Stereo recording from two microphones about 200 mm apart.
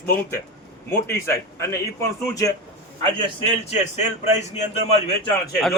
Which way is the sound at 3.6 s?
35° left (ahead or behind).